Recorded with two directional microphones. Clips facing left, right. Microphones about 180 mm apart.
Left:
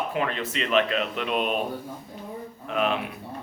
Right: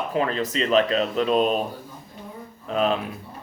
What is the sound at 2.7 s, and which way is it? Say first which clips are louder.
Speech: right 3 dB; 35° right (ahead or behind).